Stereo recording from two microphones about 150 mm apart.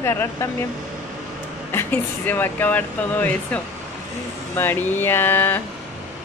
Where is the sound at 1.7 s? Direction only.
15° left (ahead or behind).